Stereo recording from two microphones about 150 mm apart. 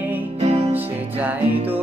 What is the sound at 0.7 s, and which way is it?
Music, 10° right (ahead or behind).